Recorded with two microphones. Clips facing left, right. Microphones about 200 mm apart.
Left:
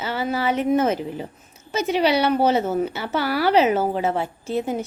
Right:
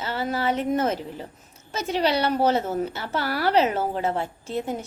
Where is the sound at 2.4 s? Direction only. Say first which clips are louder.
Left 3 dB; 25° left (ahead or behind).